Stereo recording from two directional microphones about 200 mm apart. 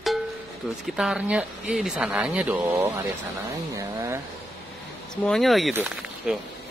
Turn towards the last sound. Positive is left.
turn(degrees=-5)  # may be behind; listen again after turning